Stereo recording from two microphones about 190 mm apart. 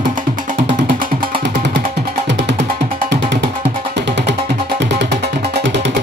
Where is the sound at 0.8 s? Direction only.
65° right (ahead or behind).